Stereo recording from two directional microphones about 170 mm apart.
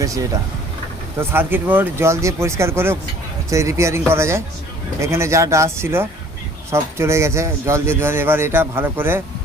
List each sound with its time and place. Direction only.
0.0 s speech: 20° right (ahead or behind)